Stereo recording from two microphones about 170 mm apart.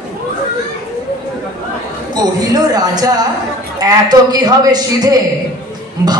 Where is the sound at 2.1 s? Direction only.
25° right (ahead or behind).